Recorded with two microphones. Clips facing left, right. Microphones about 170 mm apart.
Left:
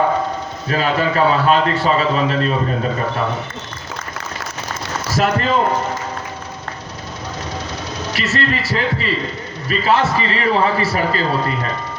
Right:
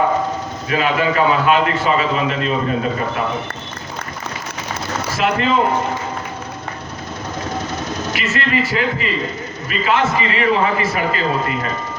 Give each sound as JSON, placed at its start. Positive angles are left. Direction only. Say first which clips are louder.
{"t": 0.7, "sound": "a man's voice", "louder": "even", "side_deg": 35}
{"t": 5.1, "sound": "a man's voice", "louder": "left 1 dB", "side_deg": 40}
{"t": 8.1, "sound": "a man's voice", "louder": "even", "side_deg": 40}